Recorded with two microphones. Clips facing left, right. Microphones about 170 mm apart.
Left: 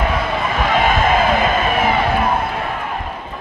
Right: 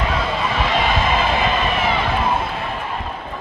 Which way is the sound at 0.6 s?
50° left (ahead or behind).